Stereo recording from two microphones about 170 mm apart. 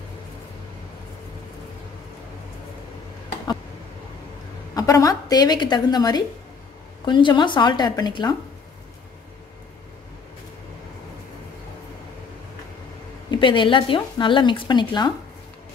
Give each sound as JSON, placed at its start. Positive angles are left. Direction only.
{"t": 4.7, "sound": "speech", "side_deg": 20}
{"t": 13.3, "sound": "speech", "side_deg": 30}